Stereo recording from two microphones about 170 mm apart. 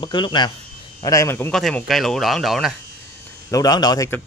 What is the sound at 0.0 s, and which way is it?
A man's voice, 25° left (ahead or behind).